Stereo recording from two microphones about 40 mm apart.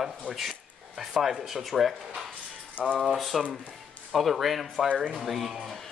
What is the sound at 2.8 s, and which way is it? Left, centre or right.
Speech, left.